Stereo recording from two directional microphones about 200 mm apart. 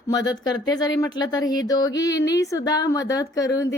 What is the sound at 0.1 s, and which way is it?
A woman's voice, 20° left (ahead or behind).